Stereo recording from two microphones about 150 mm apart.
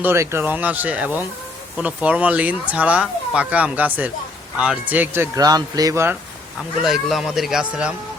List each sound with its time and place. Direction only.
0.0 s speech: 15° right (ahead or behind)
6.8 s speech: centre (ahead or behind)